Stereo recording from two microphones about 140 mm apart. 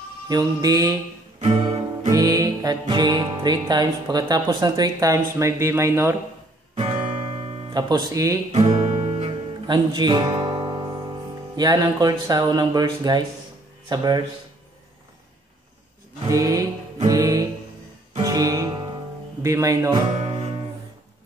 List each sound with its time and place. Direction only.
0.3 s music: 25° right (ahead or behind)
1.4 s music: 50° right (ahead or behind)
2.0 s music: 25° right (ahead or behind)
6.7 s music: 45° right (ahead or behind)
7.7 s music: 30° right (ahead or behind)
8.5 s music: 55° right (ahead or behind)
9.7 s speech: 35° right (ahead or behind)
13.8 s music: 30° right (ahead or behind)
16.3 s music: 25° right (ahead or behind)
20.2 s music: 50° right (ahead or behind)